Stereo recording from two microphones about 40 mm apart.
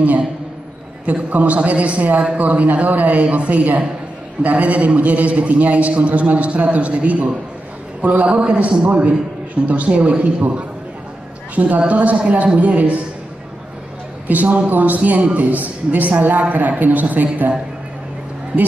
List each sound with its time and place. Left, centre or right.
1.0 s a man's voice: right
11.5 s a man's voice: right
14.2 s a man's voice: right